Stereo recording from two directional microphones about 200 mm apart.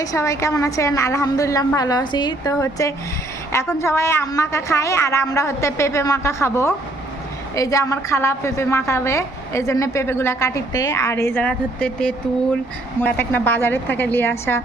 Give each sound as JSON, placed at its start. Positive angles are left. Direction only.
{"t": 0.0, "sound": "a woman's voice", "side_deg": 15}